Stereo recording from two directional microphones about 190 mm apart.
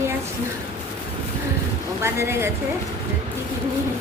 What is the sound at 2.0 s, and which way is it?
Female singing, 15° right (ahead or behind).